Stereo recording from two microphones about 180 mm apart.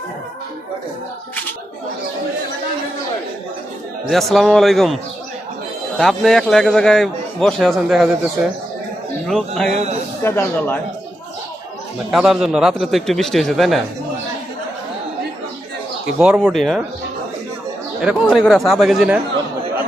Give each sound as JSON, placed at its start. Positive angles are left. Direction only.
{"t": 4.1, "sound": "a man's voice", "side_deg": 0}
{"t": 6.0, "sound": "a man's voice", "side_deg": 0}
{"t": 10.2, "sound": "a man's voice", "side_deg": 15}
{"t": 12.1, "sound": "a man's voice", "side_deg": 0}
{"t": 16.2, "sound": "a man's voice", "side_deg": 0}
{"t": 18.0, "sound": "a man's voice", "side_deg": 0}